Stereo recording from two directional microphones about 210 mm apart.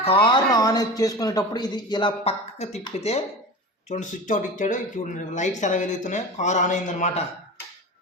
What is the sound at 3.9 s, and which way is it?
Speech, 35° left (ahead or behind).